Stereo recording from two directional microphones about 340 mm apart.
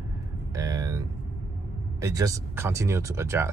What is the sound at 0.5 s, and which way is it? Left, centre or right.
Vehicle, centre.